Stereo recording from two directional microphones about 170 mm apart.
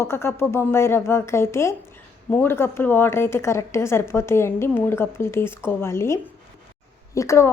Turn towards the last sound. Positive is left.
turn(degrees=15)  # may be behind; listen again after turning